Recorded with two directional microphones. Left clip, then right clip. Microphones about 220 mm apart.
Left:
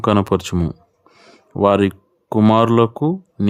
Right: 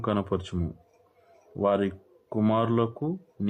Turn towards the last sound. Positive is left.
turn(degrees=50)  # may be behind; listen again after turning